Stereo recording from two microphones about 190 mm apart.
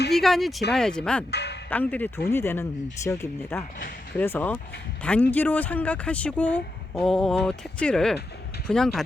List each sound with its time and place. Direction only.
0.1 s speech: centre (ahead or behind)
1.3 s speech: 60° left (ahead or behind)
1.7 s speech: 10° left (ahead or behind)